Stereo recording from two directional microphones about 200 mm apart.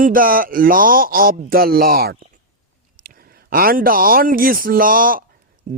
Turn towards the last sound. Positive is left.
turn(degrees=-45)  # may be behind; listen again after turning